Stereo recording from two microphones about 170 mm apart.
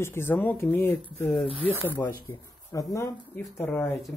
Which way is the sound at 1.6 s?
10° right (ahead or behind).